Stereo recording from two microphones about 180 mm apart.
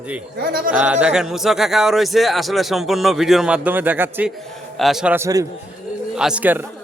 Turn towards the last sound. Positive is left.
turn(degrees=-10)  # may be behind; listen again after turning